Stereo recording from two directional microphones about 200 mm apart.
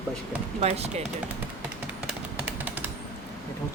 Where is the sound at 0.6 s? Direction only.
30° right (ahead or behind).